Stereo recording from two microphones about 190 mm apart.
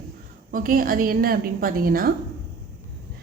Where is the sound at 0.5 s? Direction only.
45° right (ahead or behind).